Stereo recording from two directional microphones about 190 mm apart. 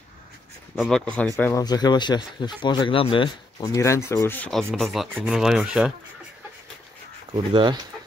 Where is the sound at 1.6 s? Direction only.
20° left (ahead or behind); by 5.9 s 5° right (ahead or behind).